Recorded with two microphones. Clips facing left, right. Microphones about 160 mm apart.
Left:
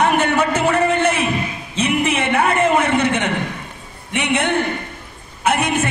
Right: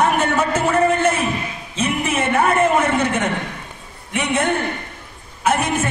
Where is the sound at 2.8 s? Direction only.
65° left (ahead or behind).